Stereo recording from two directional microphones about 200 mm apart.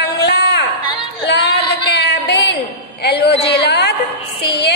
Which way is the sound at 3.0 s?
55° left (ahead or behind).